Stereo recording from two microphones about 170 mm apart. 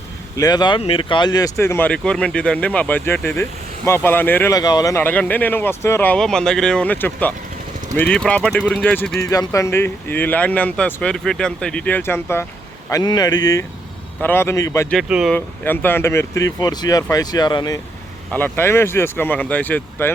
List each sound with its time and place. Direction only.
0.3 s speech: 25° left (ahead or behind); by 9.2 s 5° left (ahead or behind)
9.2 s speech: 20° left (ahead or behind)
14.8 s speech: centre (ahead or behind)
15.4 s speech: 10° left (ahead or behind)
18.3 s speech: 10° left (ahead or behind)